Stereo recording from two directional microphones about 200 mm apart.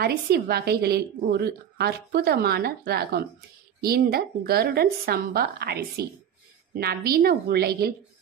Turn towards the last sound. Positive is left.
turn(degrees=-50)  # may be behind; listen again after turning